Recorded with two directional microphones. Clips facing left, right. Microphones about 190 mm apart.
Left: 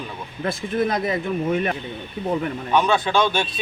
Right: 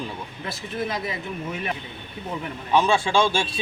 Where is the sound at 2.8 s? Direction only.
25° right (ahead or behind).